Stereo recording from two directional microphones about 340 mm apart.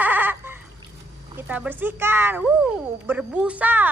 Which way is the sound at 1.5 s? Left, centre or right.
Centre.